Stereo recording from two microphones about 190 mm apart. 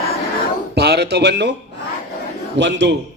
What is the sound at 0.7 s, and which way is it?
Speech, 60° right (ahead or behind).